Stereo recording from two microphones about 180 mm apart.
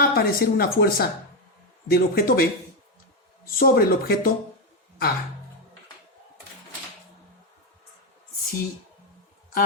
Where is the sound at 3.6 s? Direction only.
55° left (ahead or behind).